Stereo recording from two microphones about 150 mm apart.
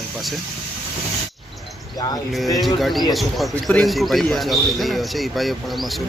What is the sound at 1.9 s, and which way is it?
Speech, 25° left (ahead or behind).